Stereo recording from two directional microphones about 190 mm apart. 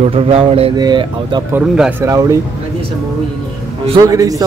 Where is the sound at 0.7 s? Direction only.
20° right (ahead or behind).